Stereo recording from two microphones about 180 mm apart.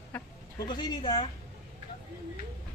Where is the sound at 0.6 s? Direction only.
25° left (ahead or behind).